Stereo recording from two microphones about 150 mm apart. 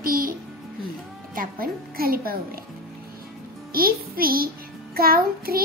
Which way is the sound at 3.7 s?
80° right.